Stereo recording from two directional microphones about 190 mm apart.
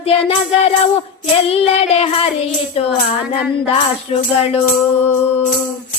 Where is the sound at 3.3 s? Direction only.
30° left (ahead or behind).